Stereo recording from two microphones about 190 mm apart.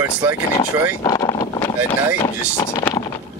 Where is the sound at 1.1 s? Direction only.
20° left (ahead or behind).